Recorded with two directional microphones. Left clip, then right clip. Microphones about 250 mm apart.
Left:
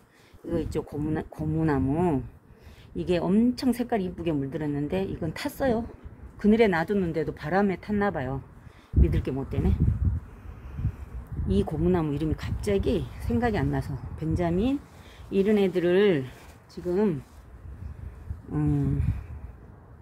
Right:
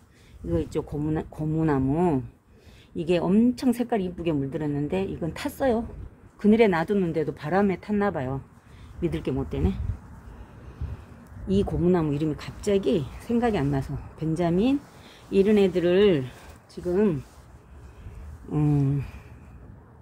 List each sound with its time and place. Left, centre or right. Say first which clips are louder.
0.5 s speech: right 2 dB; centre
11.4 s speech: right 2 dB; centre